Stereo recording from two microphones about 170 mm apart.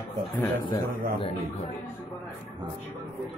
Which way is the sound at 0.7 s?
25° left (ahead or behind).